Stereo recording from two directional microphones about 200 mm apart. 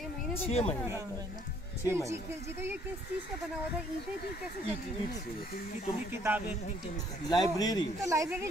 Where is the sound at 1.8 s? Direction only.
15° right (ahead or behind).